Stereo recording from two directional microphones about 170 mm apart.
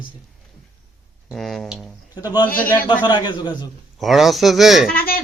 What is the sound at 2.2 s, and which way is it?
A man's voice, 25° left (ahead or behind).